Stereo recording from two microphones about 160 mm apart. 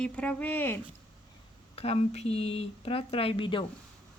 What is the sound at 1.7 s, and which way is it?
Speech, 40° left (ahead or behind).